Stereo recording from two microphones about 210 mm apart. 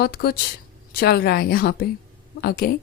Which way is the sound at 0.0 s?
50° left (ahead or behind).